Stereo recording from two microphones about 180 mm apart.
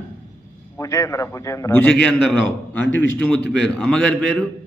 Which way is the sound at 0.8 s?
20° left (ahead or behind).